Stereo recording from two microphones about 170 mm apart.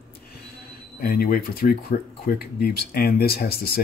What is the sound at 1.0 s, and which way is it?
Speech, 60° left (ahead or behind).